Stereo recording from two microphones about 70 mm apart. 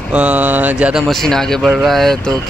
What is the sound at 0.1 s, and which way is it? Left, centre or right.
Mantra, centre.